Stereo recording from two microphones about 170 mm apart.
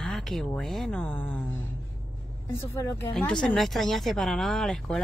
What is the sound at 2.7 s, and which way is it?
Speech, 15° left (ahead or behind).